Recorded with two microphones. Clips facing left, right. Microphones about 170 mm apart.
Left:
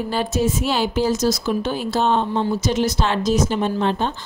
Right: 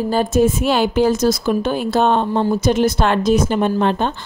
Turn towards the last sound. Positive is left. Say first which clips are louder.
# right 3 dB
turn(degrees=-60)  # may be behind; listen again after turning